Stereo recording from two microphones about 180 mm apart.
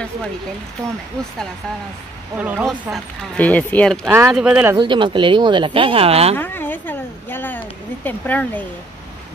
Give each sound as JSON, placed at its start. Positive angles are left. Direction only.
{"t": 2.3, "sound": "speech", "side_deg": -5}
{"t": 4.7, "sound": "speech", "side_deg": -25}
{"t": 6.3, "sound": "speech", "side_deg": 10}